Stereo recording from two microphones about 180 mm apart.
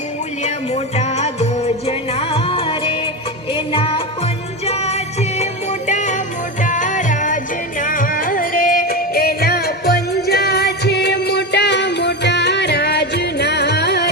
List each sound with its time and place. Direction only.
0.4 s music: 40° left (ahead or behind); by 14.1 s 65° left (ahead or behind)